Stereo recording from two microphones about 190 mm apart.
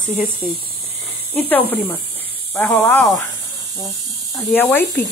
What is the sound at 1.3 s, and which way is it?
Speech, 10° left (ahead or behind).